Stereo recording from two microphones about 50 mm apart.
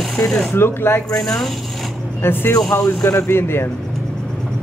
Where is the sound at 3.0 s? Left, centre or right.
Left.